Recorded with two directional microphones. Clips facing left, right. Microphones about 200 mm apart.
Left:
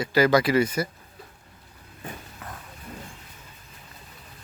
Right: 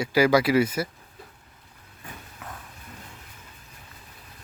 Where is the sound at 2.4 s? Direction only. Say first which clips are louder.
Even; centre (ahead or behind).